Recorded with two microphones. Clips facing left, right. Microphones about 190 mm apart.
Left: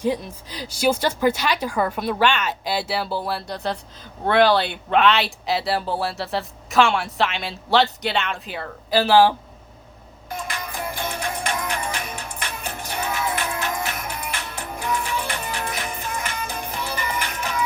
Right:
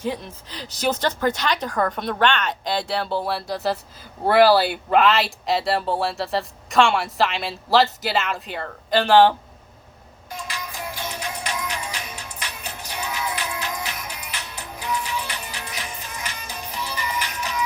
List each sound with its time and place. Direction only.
0.0 s a woman's voice: 15° left (ahead or behind)
10.2 s music: 50° left (ahead or behind)